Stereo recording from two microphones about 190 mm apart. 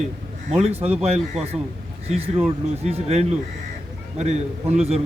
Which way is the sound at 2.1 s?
35° right (ahead or behind).